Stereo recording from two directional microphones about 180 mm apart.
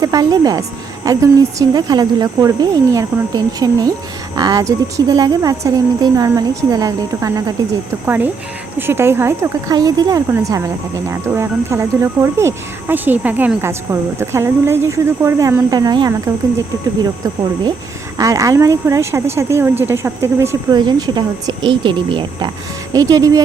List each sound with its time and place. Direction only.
0.0 s speech: 20° right (ahead or behind)
18.2 s speech: 20° right (ahead or behind)